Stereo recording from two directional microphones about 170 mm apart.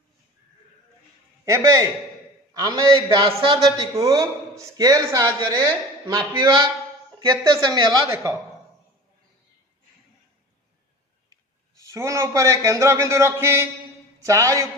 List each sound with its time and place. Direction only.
1.4 s a man's voice: 20° right (ahead or behind)
11.2 s a man's voice: 20° right (ahead or behind)